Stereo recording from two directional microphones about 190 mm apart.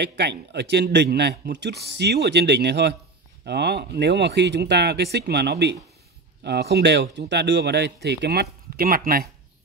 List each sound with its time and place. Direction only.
0.0 s speech: 60° right (ahead or behind)